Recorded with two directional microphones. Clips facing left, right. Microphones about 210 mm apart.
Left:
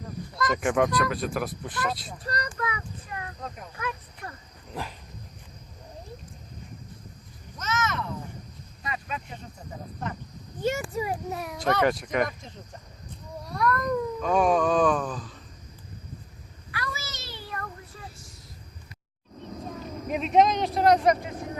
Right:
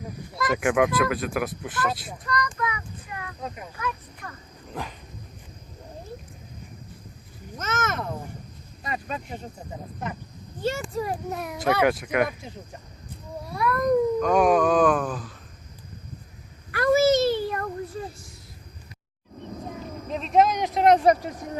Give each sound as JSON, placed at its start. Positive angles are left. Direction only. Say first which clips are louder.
{"t": 0.3, "sound": "cat", "louder": "right 2 dB", "side_deg": -5}
{"t": 2.2, "sound": "child singing", "louder": "right 4 dB", "side_deg": 30}
{"t": 3.4, "sound": "speech", "louder": "right 3 dB", "side_deg": -5}
{"t": 4.7, "sound": "dog", "louder": "right 1 dB", "side_deg": 0}
{"t": 7.6, "sound": "a sound", "louder": "right 1 dB", "side_deg": -50}
{"t": 8.8, "sound": "a sound", "louder": "right 3 dB", "side_deg": -40}
{"t": 10.6, "sound": "cat", "louder": "even", "side_deg": 15}
{"t": 16.7, "sound": "a sound", "louder": "right 19 dB", "side_deg": -50}
{"t": 19.4, "sound": "music", "louder": "right 1 dB", "side_deg": -15}
{"t": 20.1, "sound": "speech", "louder": "even", "side_deg": 5}